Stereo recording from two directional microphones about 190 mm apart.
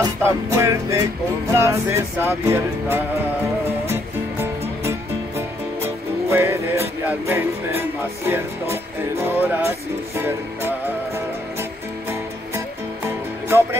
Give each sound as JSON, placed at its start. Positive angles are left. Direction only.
{"t": 0.0, "sound": "music", "side_deg": -15}
{"t": 6.2, "sound": "music", "side_deg": -10}
{"t": 12.1, "sound": "music", "side_deg": -10}